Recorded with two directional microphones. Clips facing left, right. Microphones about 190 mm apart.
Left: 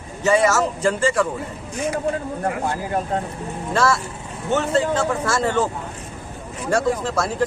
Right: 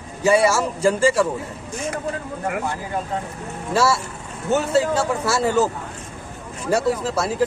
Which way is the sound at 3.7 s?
10° right (ahead or behind).